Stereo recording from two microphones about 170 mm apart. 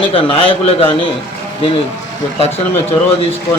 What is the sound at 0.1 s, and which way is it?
Speech, 30° left (ahead or behind).